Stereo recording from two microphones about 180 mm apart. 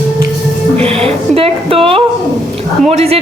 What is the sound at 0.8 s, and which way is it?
Speech, 35° right (ahead or behind).